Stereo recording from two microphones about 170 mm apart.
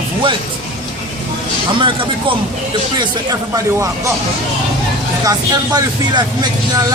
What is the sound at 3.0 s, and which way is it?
Speech, 20° right (ahead or behind).